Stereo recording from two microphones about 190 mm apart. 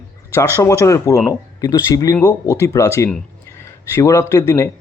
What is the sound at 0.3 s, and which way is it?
A man's voice, 15° left (ahead or behind).